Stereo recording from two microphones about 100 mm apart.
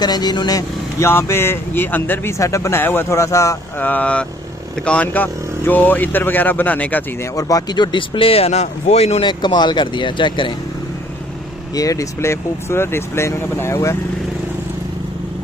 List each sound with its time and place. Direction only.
0.0 s speech: 45° left (ahead or behind)
1.0 s speech: 25° left (ahead or behind)
3.8 s speech: 15° left (ahead or behind)
7.3 s speech: 35° left (ahead or behind); by 9.2 s 90° left
9.2 s speech: 50° left (ahead or behind)
11.7 s speech: 35° left (ahead or behind)